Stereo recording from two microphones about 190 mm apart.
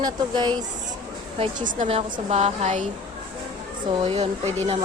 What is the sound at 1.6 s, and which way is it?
Speech, 45° right (ahead or behind).